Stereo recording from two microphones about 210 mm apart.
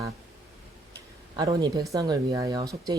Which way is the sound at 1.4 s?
20° right (ahead or behind).